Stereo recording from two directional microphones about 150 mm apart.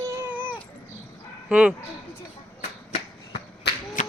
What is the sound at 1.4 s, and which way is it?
Speech, 10° right (ahead or behind).